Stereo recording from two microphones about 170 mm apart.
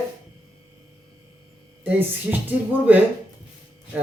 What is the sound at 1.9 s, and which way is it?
Speech, 10° right (ahead or behind).